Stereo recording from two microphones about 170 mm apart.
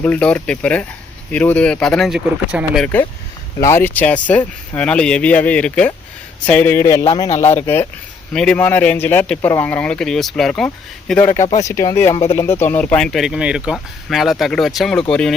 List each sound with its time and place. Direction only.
0.0 s speech: 5° left (ahead or behind)
2.8 s speech: 10° left (ahead or behind)
11.1 s speech: 15° left (ahead or behind)